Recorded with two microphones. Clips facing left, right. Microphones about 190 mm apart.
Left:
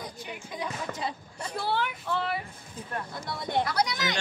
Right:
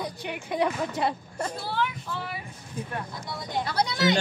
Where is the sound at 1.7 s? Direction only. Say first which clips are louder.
Even; 65° left (ahead or behind).